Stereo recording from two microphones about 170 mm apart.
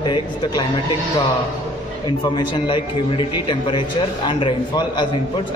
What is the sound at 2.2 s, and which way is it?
A man's voice, 25° left (ahead or behind).